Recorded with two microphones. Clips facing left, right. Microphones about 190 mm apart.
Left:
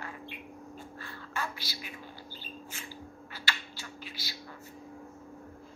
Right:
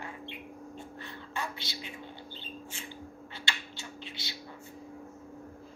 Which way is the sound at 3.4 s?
25° right (ahead or behind).